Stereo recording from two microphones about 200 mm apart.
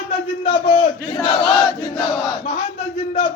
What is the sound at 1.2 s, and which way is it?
Battle cry, 20° left (ahead or behind).